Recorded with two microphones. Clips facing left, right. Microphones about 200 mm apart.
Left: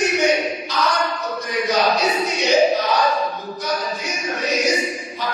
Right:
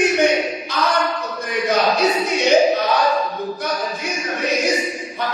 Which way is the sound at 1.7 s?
55° right (ahead or behind).